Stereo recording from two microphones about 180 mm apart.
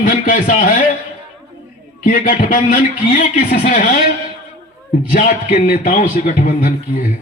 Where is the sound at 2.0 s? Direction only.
50° left (ahead or behind).